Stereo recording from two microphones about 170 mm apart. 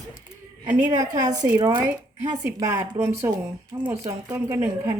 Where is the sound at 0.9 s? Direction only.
20° right (ahead or behind).